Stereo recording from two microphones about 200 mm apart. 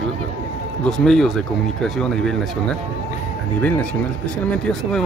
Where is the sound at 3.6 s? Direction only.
5° left (ahead or behind).